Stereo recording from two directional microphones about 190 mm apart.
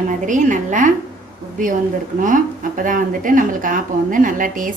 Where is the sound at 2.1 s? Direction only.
45° right (ahead or behind).